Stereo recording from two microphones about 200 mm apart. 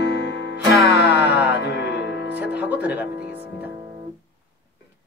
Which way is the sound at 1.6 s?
60° left (ahead or behind).